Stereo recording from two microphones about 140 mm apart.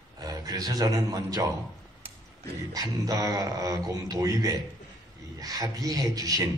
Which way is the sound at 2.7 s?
25° right (ahead or behind).